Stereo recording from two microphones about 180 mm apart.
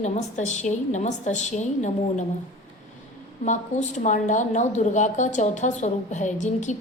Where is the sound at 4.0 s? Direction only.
45° left (ahead or behind).